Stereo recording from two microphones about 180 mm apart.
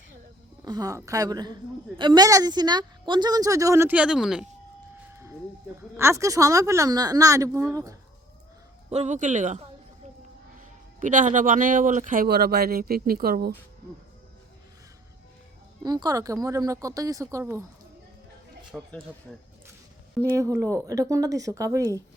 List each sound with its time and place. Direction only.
0.6 s speech: 20° right (ahead or behind); by 4.4 s 5° right (ahead or behind)
5.1 s a sound: 15° right (ahead or behind)
6.0 s speech: 15° right (ahead or behind)
8.9 s speech: 40° right (ahead or behind)
11.0 s speech: 45° right (ahead or behind)
15.8 s speech: 20° right (ahead or behind)
18.7 s speech: 5° right (ahead or behind)
20.3 s speech: 15° right (ahead or behind)